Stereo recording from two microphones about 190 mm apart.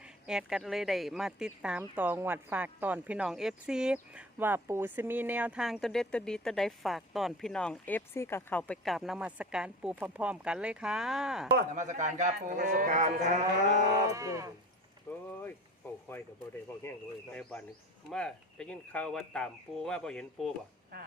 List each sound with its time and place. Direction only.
0.0 s speech: 5° right (ahead or behind)
11.7 s speech: 40° right (ahead or behind)
14.1 s speech: 15° right (ahead or behind)
15.3 s speech: 10° left (ahead or behind)
16.7 s speech: 10° left (ahead or behind)
18.1 s speech: 5° left (ahead or behind)